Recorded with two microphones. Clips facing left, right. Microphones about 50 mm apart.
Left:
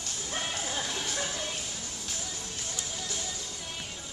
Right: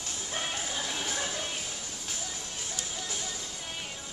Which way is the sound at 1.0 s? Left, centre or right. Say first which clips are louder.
Even; centre.